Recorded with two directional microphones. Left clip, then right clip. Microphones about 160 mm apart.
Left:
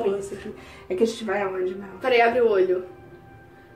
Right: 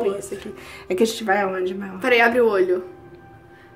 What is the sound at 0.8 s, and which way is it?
Speech, 35° right (ahead or behind).